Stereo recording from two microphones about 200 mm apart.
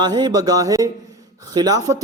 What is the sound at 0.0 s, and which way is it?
A man's voice, 20° right (ahead or behind).